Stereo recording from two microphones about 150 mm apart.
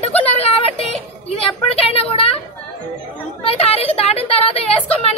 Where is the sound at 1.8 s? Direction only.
40° left (ahead or behind).